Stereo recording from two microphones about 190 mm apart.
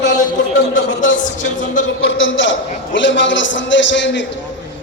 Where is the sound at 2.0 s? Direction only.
85° left; by 4.3 s 70° left (ahead or behind).